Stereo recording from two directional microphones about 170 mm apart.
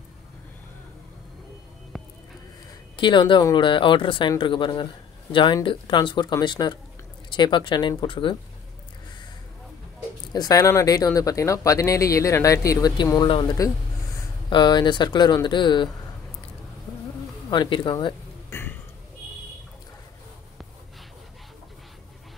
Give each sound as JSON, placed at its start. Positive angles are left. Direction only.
{"t": 3.0, "sound": "speech", "side_deg": 30}
{"t": 10.3, "sound": "speech", "side_deg": 20}
{"t": 17.5, "sound": "speech", "side_deg": 30}
{"t": 18.5, "sound": "burping", "side_deg": 15}